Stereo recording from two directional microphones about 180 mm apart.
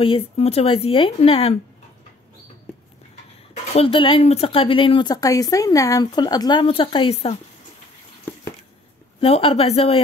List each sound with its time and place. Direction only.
0.0 s a woman's voice: 30° left (ahead or behind)
3.7 s speech: 30° left (ahead or behind)
9.2 s a woman's voice: 30° left (ahead or behind)